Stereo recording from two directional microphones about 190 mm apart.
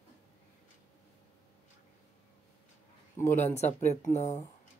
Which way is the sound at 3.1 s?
15° left (ahead or behind).